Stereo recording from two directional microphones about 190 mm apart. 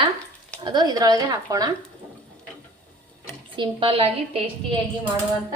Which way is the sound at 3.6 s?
30° right (ahead or behind).